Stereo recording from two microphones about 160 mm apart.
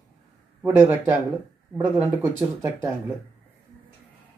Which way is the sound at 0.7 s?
15° right (ahead or behind).